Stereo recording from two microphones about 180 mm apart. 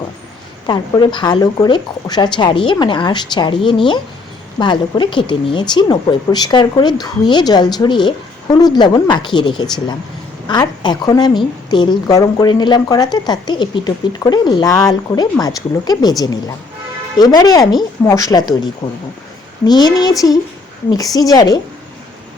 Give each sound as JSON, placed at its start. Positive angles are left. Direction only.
{"t": 0.7, "sound": "a woman's voice", "side_deg": 25}